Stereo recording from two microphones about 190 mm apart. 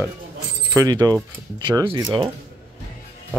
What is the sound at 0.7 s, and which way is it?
Speech, 20° right (ahead or behind).